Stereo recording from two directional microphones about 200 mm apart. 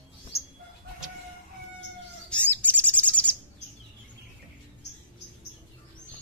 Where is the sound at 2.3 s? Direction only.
5° left (ahead or behind).